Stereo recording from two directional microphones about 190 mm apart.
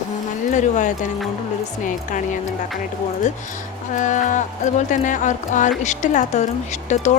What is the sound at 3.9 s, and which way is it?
Speech, 40° left (ahead or behind).